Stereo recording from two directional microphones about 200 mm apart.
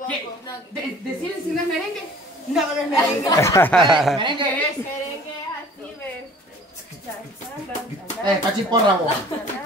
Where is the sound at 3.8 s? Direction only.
Centre (ahead or behind).